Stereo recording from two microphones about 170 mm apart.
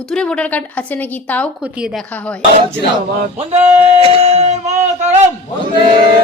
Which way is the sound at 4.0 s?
35° right (ahead or behind).